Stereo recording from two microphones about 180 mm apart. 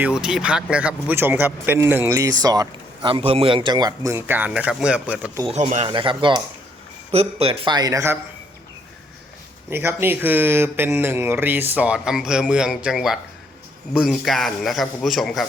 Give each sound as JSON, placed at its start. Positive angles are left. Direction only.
{"t": 0.0, "sound": "a man's voice", "side_deg": -5}
{"t": 5.5, "sound": "a man's voice", "side_deg": -35}
{"t": 9.6, "sound": "a man's voice", "side_deg": -15}